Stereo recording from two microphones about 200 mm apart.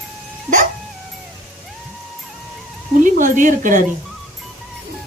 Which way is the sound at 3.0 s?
40° right (ahead or behind).